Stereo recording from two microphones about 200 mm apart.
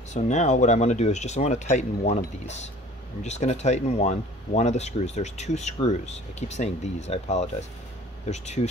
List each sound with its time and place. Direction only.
0.1 s speech: 35° left (ahead or behind)